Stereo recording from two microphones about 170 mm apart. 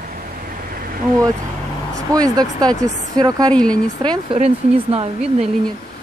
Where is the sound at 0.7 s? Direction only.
55° right (ahead or behind).